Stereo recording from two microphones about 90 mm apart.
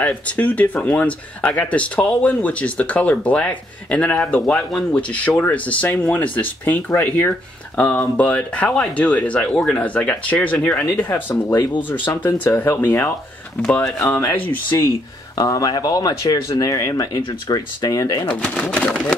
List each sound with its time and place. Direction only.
0.0 s speech: 15° left (ahead or behind)
15.3 s speech: 40° left (ahead or behind)
18.3 s speech: 15° left (ahead or behind)